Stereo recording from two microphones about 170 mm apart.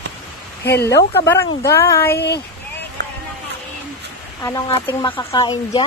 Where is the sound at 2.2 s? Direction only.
75° left (ahead or behind).